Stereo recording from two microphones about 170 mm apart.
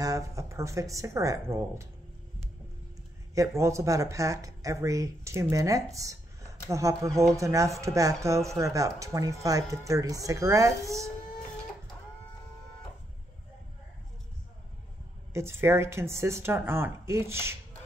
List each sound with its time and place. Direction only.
0.0 s speech: 20° right (ahead or behind)
3.3 s speech: 15° right (ahead or behind)
15.3 s speech: 15° right (ahead or behind)